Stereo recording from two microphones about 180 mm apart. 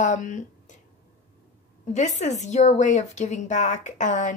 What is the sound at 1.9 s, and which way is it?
A woman's voice, 40° left (ahead or behind).